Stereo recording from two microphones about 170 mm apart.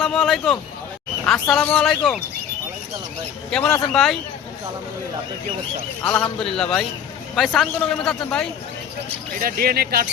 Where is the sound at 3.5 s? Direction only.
5° left (ahead or behind).